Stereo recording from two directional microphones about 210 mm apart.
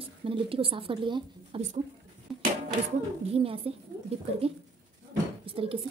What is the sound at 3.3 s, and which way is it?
Speech, 30° right (ahead or behind).